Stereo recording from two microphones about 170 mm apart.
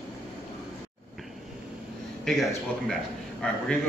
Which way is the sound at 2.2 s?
Centre (ahead or behind).